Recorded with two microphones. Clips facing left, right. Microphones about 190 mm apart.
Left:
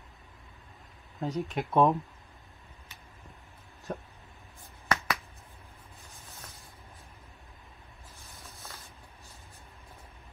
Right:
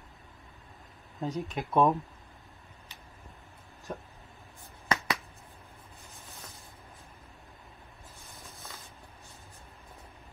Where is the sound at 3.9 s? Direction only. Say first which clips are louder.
Left 2 dB; centre (ahead or behind).